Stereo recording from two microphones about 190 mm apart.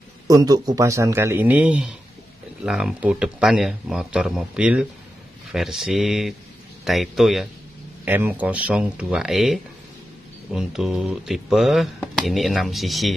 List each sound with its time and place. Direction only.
0.3 s speech: 20° right (ahead or behind); by 13.1 s centre (ahead or behind)